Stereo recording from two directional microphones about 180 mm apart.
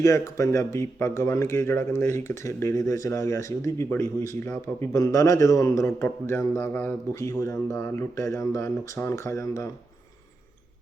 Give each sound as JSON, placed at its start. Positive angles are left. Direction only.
{"t": 0.0, "sound": "speech", "side_deg": 15}